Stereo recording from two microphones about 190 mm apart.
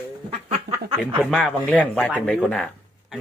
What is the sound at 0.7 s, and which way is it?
Speech, 60° right (ahead or behind).